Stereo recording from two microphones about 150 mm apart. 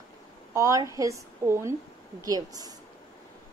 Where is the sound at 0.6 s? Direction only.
20° right (ahead or behind).